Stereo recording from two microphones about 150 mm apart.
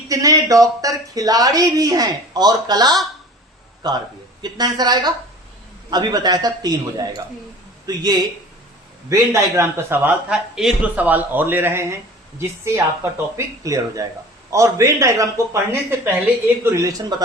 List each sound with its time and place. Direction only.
0.1 s speech: 20° right (ahead or behind)
4.4 s a man's voice: 25° right (ahead or behind)